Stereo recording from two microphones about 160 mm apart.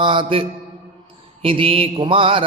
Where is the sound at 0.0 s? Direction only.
30° right (ahead or behind).